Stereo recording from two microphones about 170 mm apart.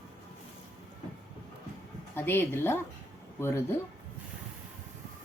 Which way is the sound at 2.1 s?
10° left (ahead or behind).